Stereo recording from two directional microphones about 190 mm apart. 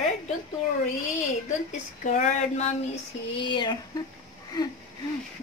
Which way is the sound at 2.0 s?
40° left (ahead or behind).